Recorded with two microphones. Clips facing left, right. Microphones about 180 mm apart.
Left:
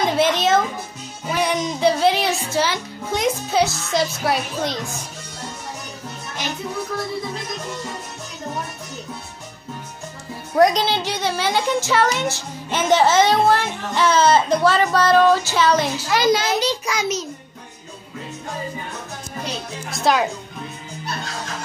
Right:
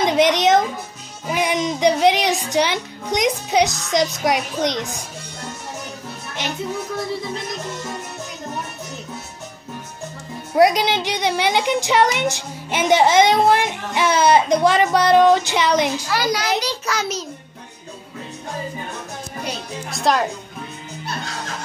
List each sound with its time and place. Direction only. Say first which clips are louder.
0.0 s a sound: right 2 dB; 15° right (ahead or behind)
1.3 s a child's voice: right 1 dB; 15° right (ahead or behind)
10.5 s a woman's voice: right 1 dB; 10° right (ahead or behind)
16.1 s a child's voice: left 3 dB; 20° left (ahead or behind)
16.8 s a child's voice: even; 10° left (ahead or behind)
19.9 s speech: even; centre (ahead or behind)